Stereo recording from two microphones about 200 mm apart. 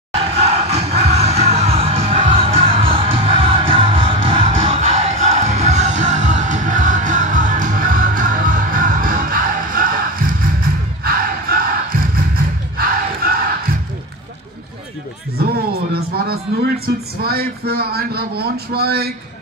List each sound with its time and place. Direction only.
0.2 s music: 30° right (ahead or behind)
12.7 s battle cry: 45° right (ahead or behind)
15.3 s a sound: 50° right (ahead or behind)